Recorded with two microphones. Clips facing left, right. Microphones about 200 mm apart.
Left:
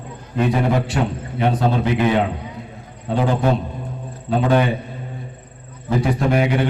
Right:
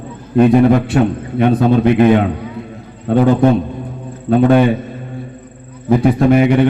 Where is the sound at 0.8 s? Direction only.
55° right (ahead or behind).